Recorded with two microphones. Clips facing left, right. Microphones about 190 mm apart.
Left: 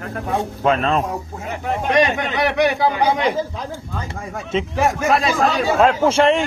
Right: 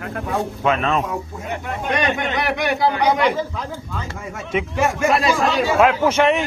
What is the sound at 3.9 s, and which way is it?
Speech, 45° left (ahead or behind).